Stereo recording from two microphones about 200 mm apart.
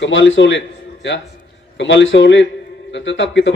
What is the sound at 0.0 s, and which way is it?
A man's voice, 65° left (ahead or behind).